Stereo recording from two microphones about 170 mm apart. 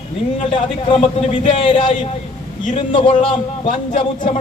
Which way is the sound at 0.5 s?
30° left (ahead or behind).